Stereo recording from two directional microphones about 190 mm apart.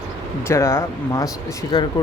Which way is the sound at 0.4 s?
15° left (ahead or behind).